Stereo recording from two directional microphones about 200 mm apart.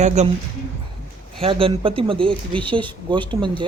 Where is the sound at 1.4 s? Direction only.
25° right (ahead or behind).